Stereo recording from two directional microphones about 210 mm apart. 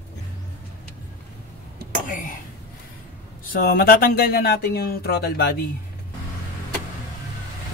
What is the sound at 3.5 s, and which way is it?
Speech, 45° left (ahead or behind).